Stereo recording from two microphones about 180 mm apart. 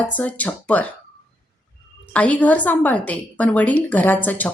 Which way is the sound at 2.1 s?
5° left (ahead or behind).